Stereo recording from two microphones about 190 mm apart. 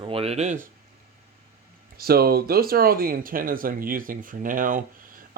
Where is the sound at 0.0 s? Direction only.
30° right (ahead or behind).